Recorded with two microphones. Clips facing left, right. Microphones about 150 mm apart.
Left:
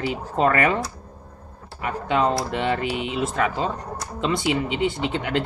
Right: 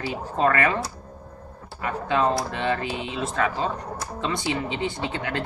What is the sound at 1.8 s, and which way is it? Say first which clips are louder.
Speech: left 1 dB; 15° left (ahead or behind).